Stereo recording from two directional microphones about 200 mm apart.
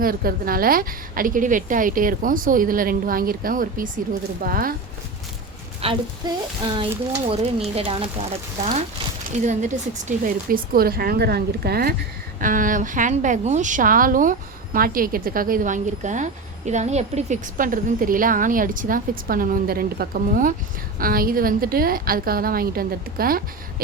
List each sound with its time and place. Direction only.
0.0 s a woman's voice: 45° right (ahead or behind)
5.8 s a woman's voice: 30° right (ahead or behind); by 23.4 s 45° right (ahead or behind)